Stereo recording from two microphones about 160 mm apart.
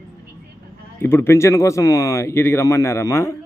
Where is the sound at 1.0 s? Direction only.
15° left (ahead or behind).